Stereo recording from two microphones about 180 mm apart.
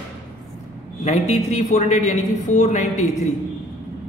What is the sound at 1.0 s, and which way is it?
A woman's voice, 35° left (ahead or behind).